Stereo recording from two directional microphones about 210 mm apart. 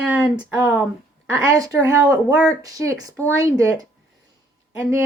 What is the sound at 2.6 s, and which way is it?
Speech, 15° right (ahead or behind).